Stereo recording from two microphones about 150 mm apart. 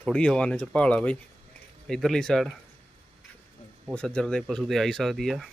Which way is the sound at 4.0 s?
5° left (ahead or behind).